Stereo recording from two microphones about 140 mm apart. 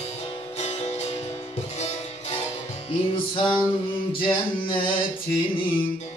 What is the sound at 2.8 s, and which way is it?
Music, 40° left (ahead or behind).